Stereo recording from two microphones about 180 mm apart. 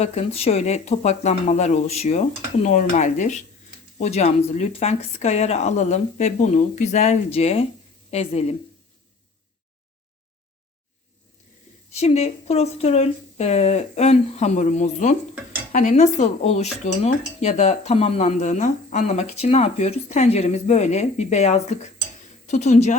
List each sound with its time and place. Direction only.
0.0 s speech: 35° left (ahead or behind)
11.9 s speech: 35° left (ahead or behind)